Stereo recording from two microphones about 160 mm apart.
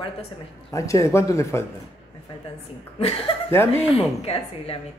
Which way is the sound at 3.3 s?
35° left (ahead or behind).